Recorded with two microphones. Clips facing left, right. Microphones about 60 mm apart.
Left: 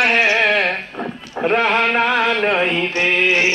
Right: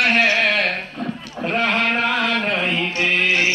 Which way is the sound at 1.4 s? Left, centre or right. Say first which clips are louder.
Left 5 dB; left.